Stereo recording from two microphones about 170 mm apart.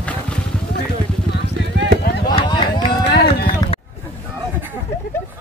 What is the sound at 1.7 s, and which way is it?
Clip-clop, 85° right.